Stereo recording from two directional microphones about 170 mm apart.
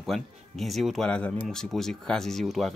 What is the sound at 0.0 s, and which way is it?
Speech, centre (ahead or behind).